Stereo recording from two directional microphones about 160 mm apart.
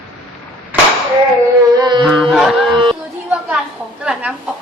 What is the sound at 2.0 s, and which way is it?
Music, centre (ahead or behind).